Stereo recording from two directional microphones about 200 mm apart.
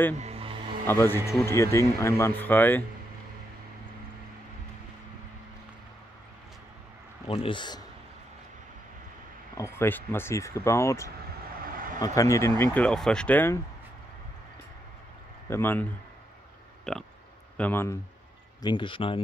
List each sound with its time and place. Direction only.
0.2 s music: 30° right (ahead or behind)
0.8 s speech: 10° left (ahead or behind)
7.2 s speech: 25° left (ahead or behind)
9.6 s speech: 10° left (ahead or behind)
11.7 s vehicle: 45° right (ahead or behind)
12.0 s speech: 15° left (ahead or behind)
15.5 s speech: 10° left (ahead or behind)
16.9 s a sound: centre (ahead or behind)
17.6 s speech: 10° left (ahead or behind)
18.6 s speech: 25° left (ahead or behind)